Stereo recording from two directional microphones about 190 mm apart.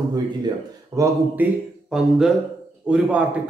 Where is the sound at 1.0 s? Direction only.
15° right (ahead or behind).